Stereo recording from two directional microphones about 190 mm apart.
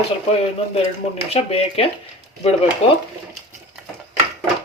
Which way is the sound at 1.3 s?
30° left (ahead or behind).